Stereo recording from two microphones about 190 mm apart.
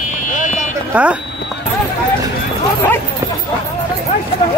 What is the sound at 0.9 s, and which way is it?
Speech, 5° right (ahead or behind).